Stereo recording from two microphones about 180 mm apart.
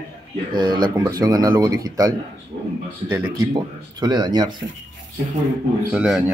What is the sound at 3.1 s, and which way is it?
Speech, 20° right (ahead or behind).